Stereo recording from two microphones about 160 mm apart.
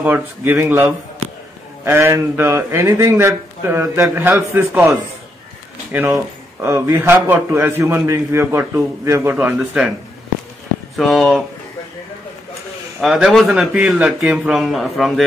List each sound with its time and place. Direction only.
0.0 s a man's voice: 10° right (ahead or behind)
11.0 s a man's voice: centre (ahead or behind)
13.0 s a man's voice: centre (ahead or behind)